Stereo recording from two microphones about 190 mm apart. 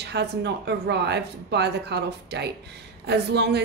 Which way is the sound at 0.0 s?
60° right (ahead or behind).